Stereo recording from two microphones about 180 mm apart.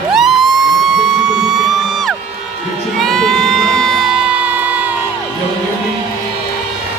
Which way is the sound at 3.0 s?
Centre (ahead or behind).